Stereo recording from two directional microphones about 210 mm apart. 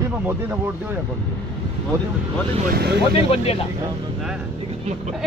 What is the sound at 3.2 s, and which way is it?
Speech, 30° left (ahead or behind).